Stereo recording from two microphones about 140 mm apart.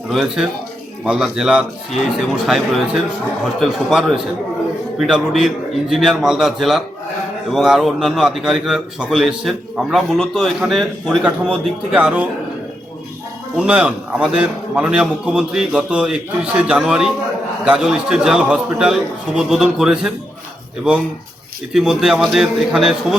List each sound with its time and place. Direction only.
0.1 s a man's voice: centre (ahead or behind)
13.6 s a man's voice: 10° right (ahead or behind)
21.7 s a man's voice: 5° right (ahead or behind)